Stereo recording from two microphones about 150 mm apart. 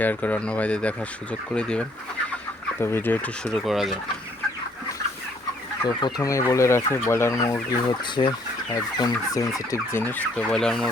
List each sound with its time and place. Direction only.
0.0 s speech: 10° left (ahead or behind)
5.8 s speech: 30° left (ahead or behind)
9.7 s speech: 15° left (ahead or behind)